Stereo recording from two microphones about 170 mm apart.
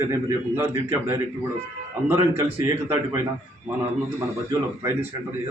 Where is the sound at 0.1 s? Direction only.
15° right (ahead or behind).